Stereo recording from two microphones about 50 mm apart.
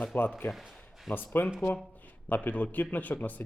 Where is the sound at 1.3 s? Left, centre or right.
Left.